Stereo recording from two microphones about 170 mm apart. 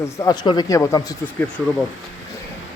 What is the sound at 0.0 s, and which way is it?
Speech, 20° left (ahead or behind).